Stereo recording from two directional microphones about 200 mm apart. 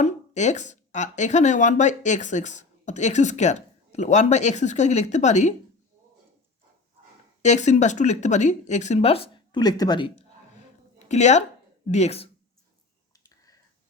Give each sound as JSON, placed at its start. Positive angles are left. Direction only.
{"t": 0.0, "sound": "speech", "side_deg": 35}
{"t": 7.4, "sound": "speech", "side_deg": 35}
{"t": 11.1, "sound": "speech", "side_deg": 35}
{"t": 13.2, "sound": "a sound", "side_deg": 15}